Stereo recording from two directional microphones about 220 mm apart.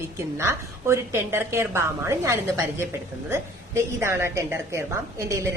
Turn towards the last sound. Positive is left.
turn(degrees=-15)  # may be behind; listen again after turning